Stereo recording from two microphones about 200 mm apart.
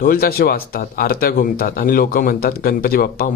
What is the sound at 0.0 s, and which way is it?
Speech, 50° left (ahead or behind).